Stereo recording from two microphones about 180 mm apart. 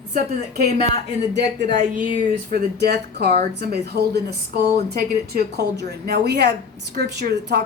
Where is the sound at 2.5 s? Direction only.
65° right (ahead or behind).